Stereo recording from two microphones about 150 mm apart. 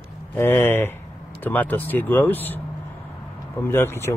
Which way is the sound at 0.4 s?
15° left (ahead or behind).